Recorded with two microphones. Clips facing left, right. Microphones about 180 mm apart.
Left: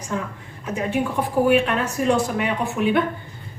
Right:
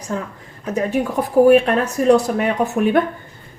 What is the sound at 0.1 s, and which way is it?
A woman's voice, 35° right (ahead or behind).